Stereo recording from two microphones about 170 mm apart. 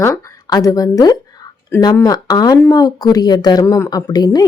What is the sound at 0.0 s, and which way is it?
A woman's voice, 20° left (ahead or behind).